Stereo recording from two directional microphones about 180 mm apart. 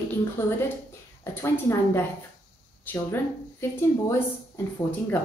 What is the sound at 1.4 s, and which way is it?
A woman's voice, 15° left (ahead or behind).